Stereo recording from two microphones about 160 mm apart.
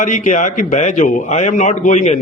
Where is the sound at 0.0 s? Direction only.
50° left (ahead or behind).